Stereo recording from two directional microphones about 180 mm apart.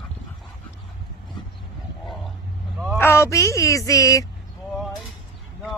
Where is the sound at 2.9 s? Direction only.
15° left (ahead or behind).